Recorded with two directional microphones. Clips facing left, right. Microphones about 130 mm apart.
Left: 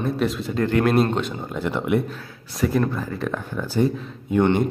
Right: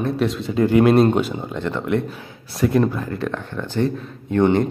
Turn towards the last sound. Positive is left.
turn(degrees=10)  # may be behind; listen again after turning